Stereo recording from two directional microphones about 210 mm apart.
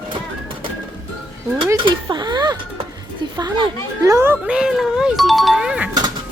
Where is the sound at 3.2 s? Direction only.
20° right (ahead or behind).